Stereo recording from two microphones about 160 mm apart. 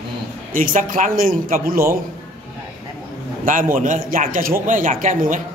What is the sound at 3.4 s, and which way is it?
A man's voice, 60° right (ahead or behind).